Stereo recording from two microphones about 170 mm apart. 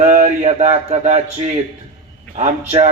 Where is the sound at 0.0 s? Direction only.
45° right (ahead or behind).